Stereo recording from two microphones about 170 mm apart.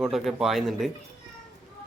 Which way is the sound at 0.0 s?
Centre (ahead or behind).